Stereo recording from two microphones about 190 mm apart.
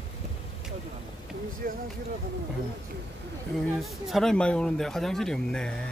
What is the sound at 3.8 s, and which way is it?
Speech, centre (ahead or behind).